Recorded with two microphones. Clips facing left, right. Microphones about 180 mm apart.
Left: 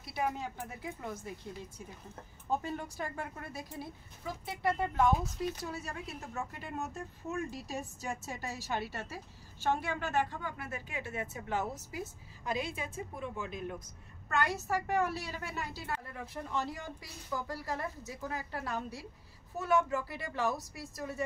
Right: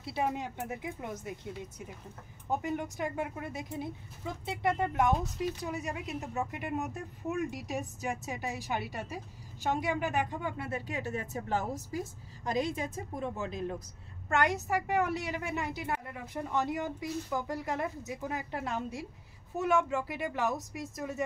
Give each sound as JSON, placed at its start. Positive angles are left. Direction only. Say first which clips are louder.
{"t": 0.0, "sound": "a woman's voice", "louder": "right 2 dB", "side_deg": -25}
{"t": 5.1, "sound": "speech", "louder": "right 2 dB", "side_deg": 0}
{"t": 5.6, "sound": "a woman's voice", "louder": "right 4 dB", "side_deg": -15}
{"t": 10.6, "sound": "a woman's voice", "louder": "right 5 dB", "side_deg": -35}
{"t": 14.3, "sound": "a woman's voice", "louder": "right 3 dB", "side_deg": -15}